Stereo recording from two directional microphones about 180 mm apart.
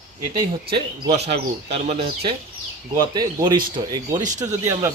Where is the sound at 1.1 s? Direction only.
35° right (ahead or behind); by 4.9 s 20° right (ahead or behind).